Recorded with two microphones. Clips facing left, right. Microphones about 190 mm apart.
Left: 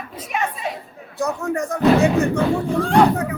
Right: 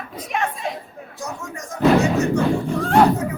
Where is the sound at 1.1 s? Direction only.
60° left (ahead or behind).